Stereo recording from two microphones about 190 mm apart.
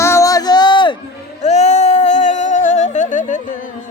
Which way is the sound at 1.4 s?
35° left (ahead or behind).